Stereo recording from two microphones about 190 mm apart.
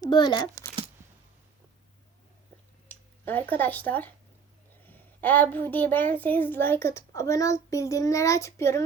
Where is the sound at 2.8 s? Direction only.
10° left (ahead or behind).